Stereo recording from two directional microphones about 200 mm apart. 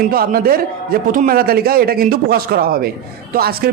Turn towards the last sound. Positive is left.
turn(degrees=-50)  # may be behind; listen again after turning